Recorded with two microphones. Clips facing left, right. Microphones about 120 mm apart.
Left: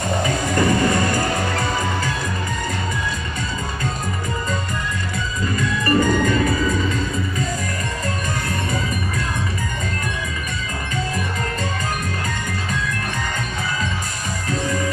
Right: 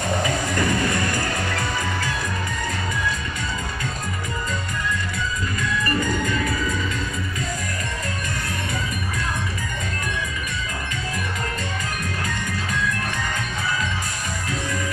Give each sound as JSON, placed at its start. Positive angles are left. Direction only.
{"t": 0.6, "sound": "music", "side_deg": 30}
{"t": 5.9, "sound": "music", "side_deg": 35}